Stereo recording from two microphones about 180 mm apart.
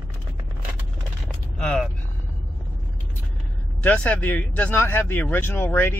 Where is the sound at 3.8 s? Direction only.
5° left (ahead or behind).